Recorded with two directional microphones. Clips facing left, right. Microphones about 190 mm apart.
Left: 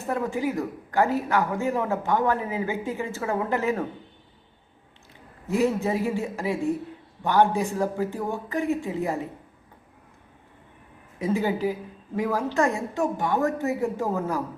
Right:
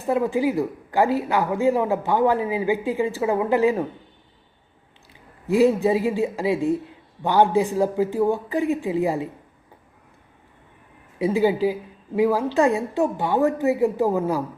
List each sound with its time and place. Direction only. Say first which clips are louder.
0.0 s speech: right 5 dB; 15° right (ahead or behind)
5.5 s speech: right 6 dB; 15° right (ahead or behind)
11.2 s speech: right 5 dB; 15° right (ahead or behind)